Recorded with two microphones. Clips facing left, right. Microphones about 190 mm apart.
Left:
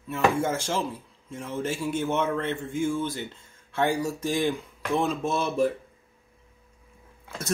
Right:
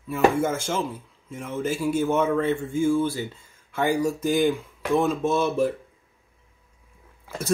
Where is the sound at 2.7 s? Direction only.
15° left (ahead or behind).